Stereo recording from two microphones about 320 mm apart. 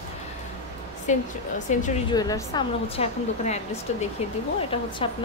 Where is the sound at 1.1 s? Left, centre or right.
Left.